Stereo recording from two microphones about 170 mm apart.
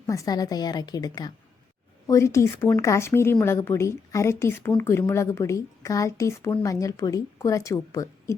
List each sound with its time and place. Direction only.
0.1 s a woman's voice: 20° left (ahead or behind)